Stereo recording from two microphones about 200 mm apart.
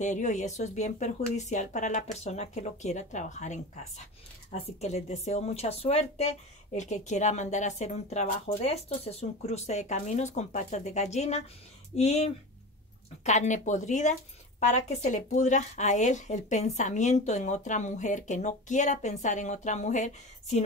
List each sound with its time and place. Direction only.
0.0 s a woman's voice: 35° left (ahead or behind)